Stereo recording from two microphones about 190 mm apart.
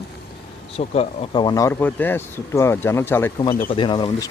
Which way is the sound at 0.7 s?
30° left (ahead or behind).